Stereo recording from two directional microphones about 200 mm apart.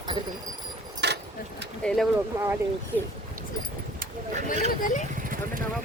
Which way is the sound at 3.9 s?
40° right (ahead or behind).